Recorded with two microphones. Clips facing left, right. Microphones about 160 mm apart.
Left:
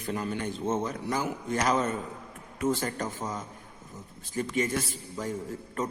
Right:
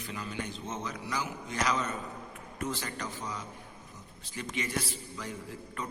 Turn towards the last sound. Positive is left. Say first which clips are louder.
# left 7 dB
turn(degrees=45)  # may be behind; listen again after turning